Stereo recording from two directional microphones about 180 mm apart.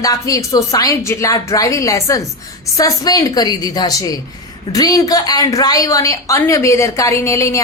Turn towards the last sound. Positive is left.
turn(degrees=15)  # may be behind; listen again after turning